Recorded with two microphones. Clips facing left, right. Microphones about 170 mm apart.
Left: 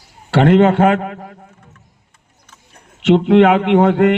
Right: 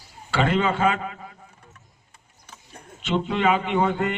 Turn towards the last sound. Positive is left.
turn(degrees=75)  # may be behind; listen again after turning